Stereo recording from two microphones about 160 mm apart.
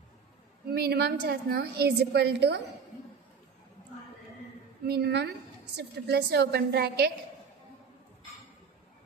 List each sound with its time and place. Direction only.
0.7 s a woman's voice: 80° right
4.8 s a woman's voice: 90° right